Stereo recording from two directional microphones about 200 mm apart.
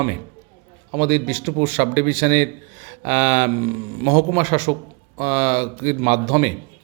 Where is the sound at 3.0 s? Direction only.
30° right (ahead or behind).